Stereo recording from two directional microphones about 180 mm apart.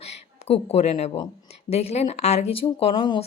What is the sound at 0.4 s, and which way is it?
Speech, 35° left (ahead or behind).